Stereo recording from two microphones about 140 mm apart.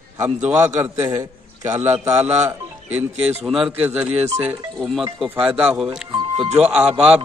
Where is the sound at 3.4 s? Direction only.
Centre (ahead or behind).